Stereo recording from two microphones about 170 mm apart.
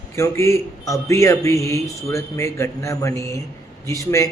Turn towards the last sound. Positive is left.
turn(degrees=20)  # may be behind; listen again after turning